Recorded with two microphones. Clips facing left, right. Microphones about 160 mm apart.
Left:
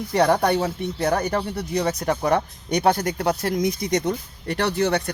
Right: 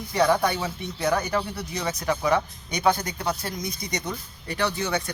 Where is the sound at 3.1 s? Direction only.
60° left (ahead or behind).